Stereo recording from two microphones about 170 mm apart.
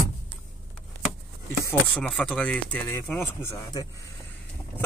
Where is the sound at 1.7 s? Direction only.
5° left (ahead or behind).